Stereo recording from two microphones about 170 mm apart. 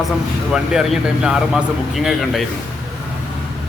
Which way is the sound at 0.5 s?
5° right (ahead or behind).